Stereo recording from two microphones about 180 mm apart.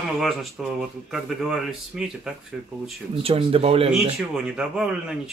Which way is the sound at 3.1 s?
30° right (ahead or behind).